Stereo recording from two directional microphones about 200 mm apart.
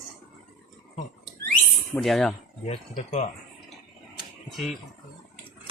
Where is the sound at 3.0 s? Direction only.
35° left (ahead or behind).